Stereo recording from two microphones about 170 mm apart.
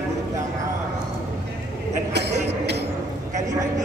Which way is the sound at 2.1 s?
80° right.